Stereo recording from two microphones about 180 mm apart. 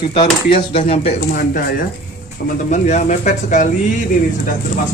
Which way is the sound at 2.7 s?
40° left (ahead or behind).